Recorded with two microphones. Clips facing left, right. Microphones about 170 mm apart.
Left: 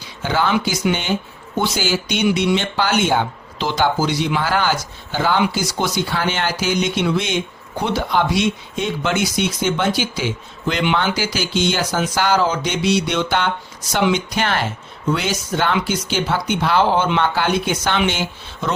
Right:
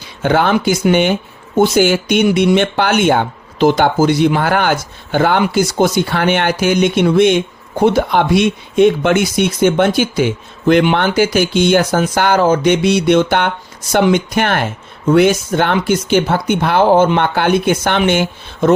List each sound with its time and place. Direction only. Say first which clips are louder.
0.2 s speech: right 6 dB; 60° right (ahead or behind)